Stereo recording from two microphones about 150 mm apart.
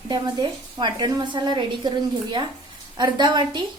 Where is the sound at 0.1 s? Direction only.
30° right (ahead or behind).